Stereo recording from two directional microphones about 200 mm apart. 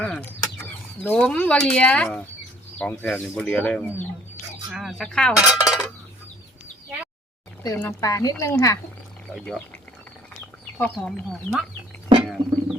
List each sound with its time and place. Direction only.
0.0 s speech: 5° left (ahead or behind)
4.7 s cutlery: centre (ahead or behind)
7.6 s speech: 15° left (ahead or behind)
9.3 s cutlery: 5° left (ahead or behind)
10.8 s cutlery: 5° left (ahead or behind)
12.2 s bird: centre (ahead or behind)